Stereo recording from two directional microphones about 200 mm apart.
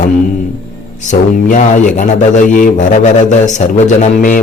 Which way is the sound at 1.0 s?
40° left (ahead or behind).